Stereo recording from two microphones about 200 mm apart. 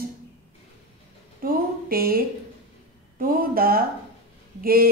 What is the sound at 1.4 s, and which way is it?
Speech, 45° right (ahead or behind).